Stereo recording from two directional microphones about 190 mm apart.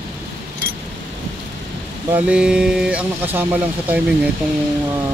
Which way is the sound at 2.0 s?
10° right (ahead or behind).